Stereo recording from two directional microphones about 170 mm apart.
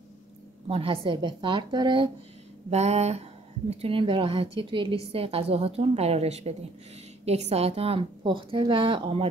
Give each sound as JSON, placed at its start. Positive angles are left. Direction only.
{"t": 0.7, "sound": "a woman's voice", "side_deg": -35}
{"t": 2.7, "sound": "a woman's voice", "side_deg": -40}